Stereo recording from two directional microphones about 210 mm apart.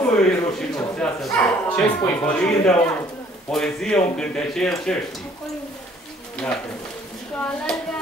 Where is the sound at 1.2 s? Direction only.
10° left (ahead or behind).